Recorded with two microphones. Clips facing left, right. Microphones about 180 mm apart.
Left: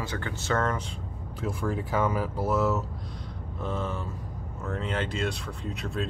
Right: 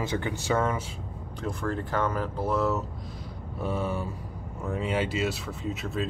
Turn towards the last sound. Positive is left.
turn(degrees=0)  # may be behind; listen again after turning